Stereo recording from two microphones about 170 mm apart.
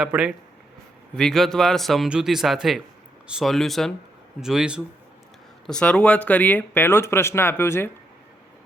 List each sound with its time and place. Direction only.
0.0 s speech: 5° right (ahead or behind); by 7.9 s 15° left (ahead or behind)